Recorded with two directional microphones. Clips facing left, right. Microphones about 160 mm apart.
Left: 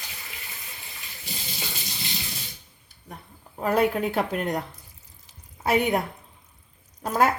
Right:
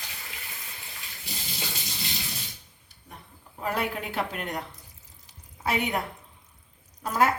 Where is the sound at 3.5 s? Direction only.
45° left (ahead or behind).